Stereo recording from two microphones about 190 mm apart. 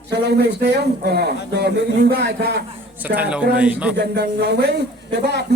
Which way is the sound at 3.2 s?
5° right (ahead or behind).